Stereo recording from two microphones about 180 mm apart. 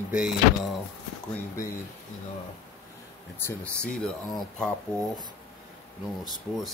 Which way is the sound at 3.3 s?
10° left (ahead or behind).